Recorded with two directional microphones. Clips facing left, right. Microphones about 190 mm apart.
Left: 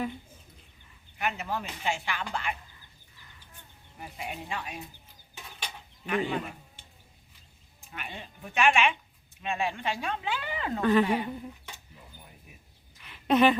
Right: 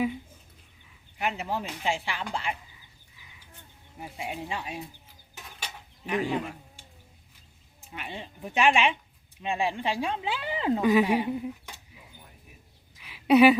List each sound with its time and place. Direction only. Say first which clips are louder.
1.2 s a woman's voice: right 2 dB; 25° right (ahead or behind)
3.2 s frog: even; 10° right (ahead or behind)
4.2 s a woman's voice: right 2 dB; 25° right (ahead or behind)
5.4 s a sound: even; 5° right (ahead or behind)
6.1 s speech: right 1 dB; 10° right (ahead or behind)
7.9 s a woman's voice: right 3 dB; 25° right (ahead or behind)
8.5 s a woman's voice: right 1 dB; 30° right (ahead or behind)
10.8 s speech: right 1 dB; 10° right (ahead or behind)
13.0 s a sound: right 4 dB; 5° right (ahead or behind)